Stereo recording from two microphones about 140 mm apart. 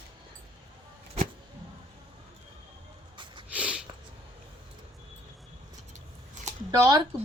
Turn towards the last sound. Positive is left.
turn(degrees=-30)  # may be behind; listen again after turning